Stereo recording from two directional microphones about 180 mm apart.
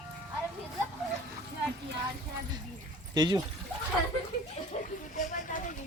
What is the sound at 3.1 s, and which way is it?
Speech, 25° right (ahead or behind).